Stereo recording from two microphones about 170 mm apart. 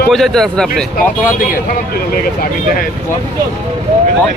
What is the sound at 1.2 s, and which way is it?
Speech, 55° left (ahead or behind).